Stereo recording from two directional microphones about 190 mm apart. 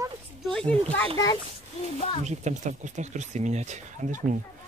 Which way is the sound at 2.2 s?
40° right (ahead or behind).